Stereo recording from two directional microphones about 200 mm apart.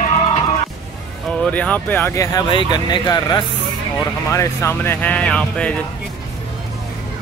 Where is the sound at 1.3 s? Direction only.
5° left (ahead or behind).